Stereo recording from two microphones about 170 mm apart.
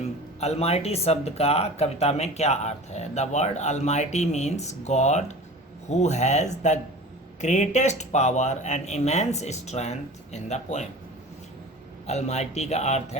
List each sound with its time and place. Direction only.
0.0 s speech: 40° left (ahead or behind)
12.0 s speech: 40° left (ahead or behind)